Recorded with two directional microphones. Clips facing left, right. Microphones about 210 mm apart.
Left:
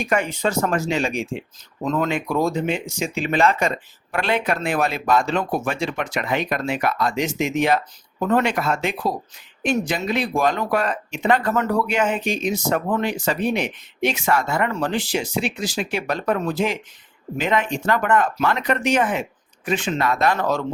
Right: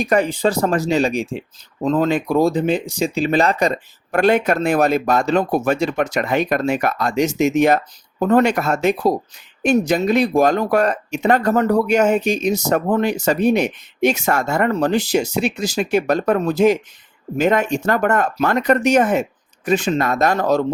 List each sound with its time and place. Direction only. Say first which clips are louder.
0.0 s speech: right 5 dB; 35° right (ahead or behind)